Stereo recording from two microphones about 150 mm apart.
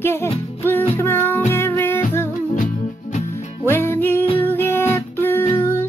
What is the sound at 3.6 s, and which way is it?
Music, 15° left (ahead or behind).